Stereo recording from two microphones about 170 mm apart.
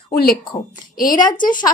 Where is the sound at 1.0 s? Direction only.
55° left (ahead or behind).